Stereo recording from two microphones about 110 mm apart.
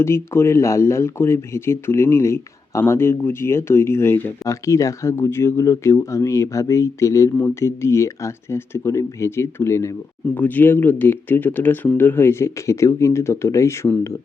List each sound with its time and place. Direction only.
0.0 s speech: 25° left (ahead or behind)